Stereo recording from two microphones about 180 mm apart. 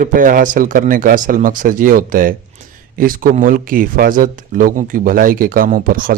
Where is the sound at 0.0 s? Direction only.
50° right (ahead or behind).